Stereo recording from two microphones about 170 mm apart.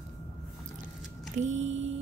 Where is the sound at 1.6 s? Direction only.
90° right.